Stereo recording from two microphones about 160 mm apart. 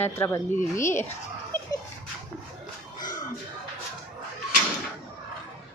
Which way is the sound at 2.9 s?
25° left (ahead or behind).